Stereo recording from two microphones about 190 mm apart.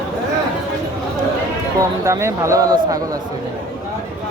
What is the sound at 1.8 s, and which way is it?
Speech, 15° right (ahead or behind).